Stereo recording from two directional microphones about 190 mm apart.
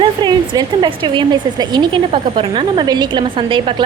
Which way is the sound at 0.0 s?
25° right (ahead or behind).